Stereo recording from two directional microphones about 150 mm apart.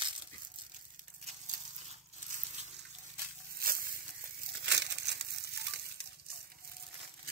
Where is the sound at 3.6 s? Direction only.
80° right.